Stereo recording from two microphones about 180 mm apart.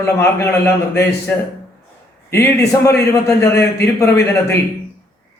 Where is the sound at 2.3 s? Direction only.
15° left (ahead or behind).